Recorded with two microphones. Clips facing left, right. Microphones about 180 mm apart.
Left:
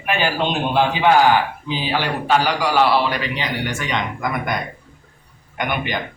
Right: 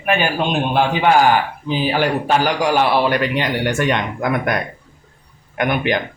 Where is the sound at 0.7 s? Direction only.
50° right (ahead or behind).